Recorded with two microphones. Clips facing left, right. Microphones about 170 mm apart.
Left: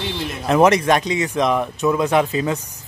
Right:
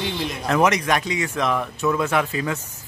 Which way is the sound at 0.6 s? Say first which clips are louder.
Left 5 dB; 30° left (ahead or behind).